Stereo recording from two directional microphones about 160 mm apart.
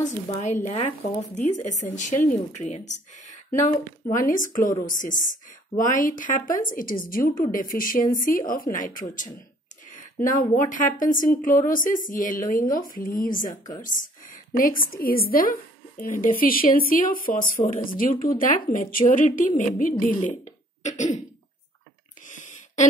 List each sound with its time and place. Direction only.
0.0 s speech: 45° left (ahead or behind)